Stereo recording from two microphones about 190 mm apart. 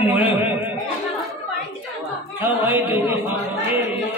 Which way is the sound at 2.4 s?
10° right (ahead or behind).